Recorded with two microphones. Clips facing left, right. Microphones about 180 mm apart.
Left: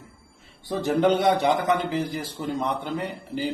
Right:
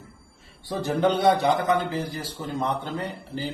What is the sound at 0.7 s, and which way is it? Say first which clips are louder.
A man's voice: left 2 dB; 20° left (ahead or behind).